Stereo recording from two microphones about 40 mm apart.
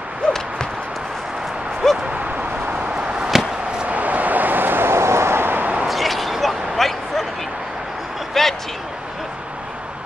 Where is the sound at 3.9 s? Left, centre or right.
Right.